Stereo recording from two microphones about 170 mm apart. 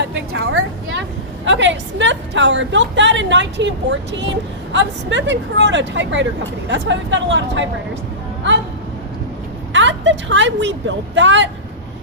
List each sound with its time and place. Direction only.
0.1 s a woman's voice: 90° right
4.7 s a woman's voice: 90° right
9.7 s a woman's voice: 90° right